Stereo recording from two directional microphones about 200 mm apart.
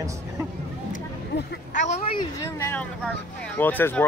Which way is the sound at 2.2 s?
10° left (ahead or behind).